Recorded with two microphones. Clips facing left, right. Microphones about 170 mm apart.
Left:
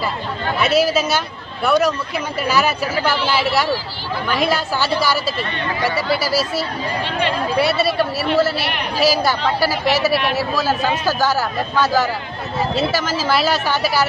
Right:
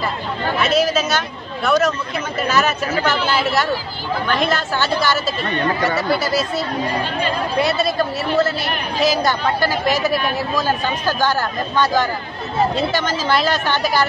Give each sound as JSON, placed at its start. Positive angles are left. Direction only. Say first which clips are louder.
{"t": 0.6, "sound": "a man's voice", "louder": "left 1 dB", "side_deg": 10}
{"t": 5.5, "sound": "speech", "louder": "right 5 dB", "side_deg": -50}
{"t": 6.2, "sound": "a woman's voice", "louder": "even", "side_deg": 5}